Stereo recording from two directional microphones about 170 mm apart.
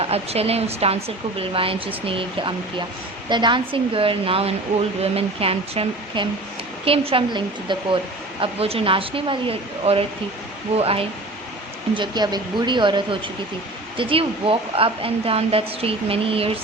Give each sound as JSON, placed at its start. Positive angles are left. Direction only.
{"t": 0.0, "sound": "speech", "side_deg": -35}